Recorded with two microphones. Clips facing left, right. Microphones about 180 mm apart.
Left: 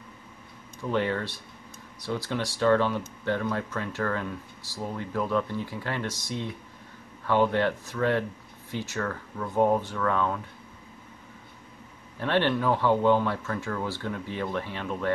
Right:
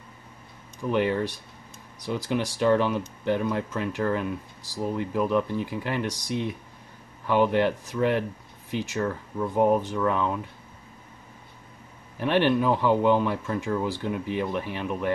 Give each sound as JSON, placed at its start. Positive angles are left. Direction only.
{"t": 0.8, "sound": "speech", "side_deg": -15}
{"t": 12.2, "sound": "speech", "side_deg": -15}